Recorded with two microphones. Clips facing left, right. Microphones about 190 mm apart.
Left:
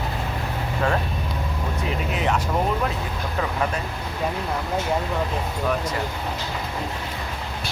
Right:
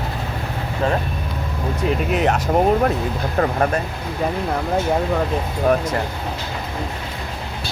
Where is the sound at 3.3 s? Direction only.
50° right (ahead or behind).